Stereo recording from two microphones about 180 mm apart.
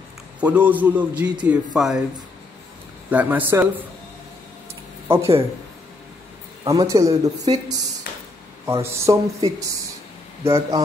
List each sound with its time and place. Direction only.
0.4 s speech: 10° right (ahead or behind)
3.1 s speech: 10° right (ahead or behind)
5.0 s speech: 15° right (ahead or behind)
6.6 s speech: 20° right (ahead or behind)
8.6 s speech: 15° right (ahead or behind)